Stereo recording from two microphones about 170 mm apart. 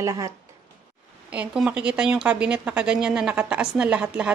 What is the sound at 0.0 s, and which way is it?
Speech, 20° right (ahead or behind).